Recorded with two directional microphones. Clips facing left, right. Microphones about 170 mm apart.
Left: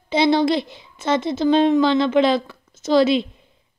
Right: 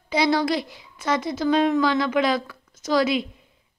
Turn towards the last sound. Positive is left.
turn(degrees=25)  # may be behind; listen again after turning